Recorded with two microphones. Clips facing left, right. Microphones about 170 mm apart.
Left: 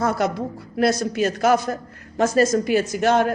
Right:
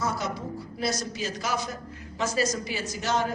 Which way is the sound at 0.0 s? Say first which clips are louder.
Left 8 dB; 60° left (ahead or behind).